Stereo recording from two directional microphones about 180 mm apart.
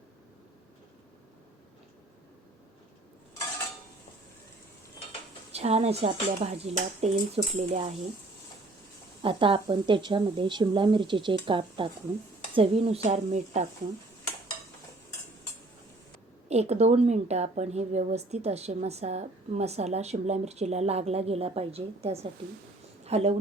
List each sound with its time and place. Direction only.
5.5 s a woman's voice: 35° right (ahead or behind)
9.2 s a woman's voice: 30° right (ahead or behind)
16.5 s a woman's voice: 35° right (ahead or behind)